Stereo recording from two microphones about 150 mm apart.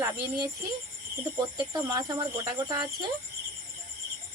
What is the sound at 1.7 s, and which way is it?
Speech, 25° right (ahead or behind).